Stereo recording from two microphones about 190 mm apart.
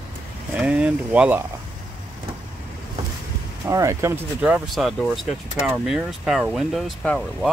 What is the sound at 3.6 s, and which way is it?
Speech, 15° right (ahead or behind).